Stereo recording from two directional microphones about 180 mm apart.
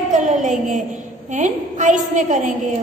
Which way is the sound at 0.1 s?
45° right (ahead or behind).